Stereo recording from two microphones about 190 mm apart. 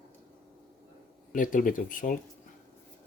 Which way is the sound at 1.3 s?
45° left (ahead or behind).